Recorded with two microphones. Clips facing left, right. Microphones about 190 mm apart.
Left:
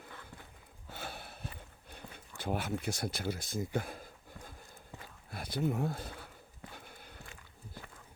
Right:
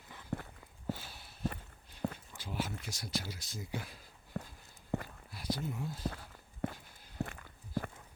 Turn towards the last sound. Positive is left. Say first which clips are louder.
# right 11 dB
turn(degrees=-60)  # may be behind; listen again after turning